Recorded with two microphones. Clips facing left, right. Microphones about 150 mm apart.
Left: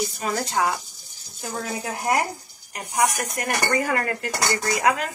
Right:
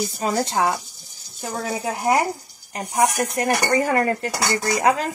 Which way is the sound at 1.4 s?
25° right (ahead or behind).